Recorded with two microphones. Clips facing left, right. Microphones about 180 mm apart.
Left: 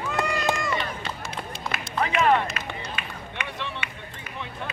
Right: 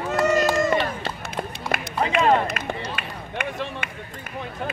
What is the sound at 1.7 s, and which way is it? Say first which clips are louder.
Run: right 3 dB; 50° right (ahead or behind).